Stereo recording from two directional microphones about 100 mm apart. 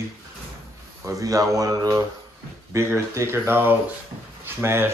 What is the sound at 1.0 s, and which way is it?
Speech, 35° right (ahead or behind).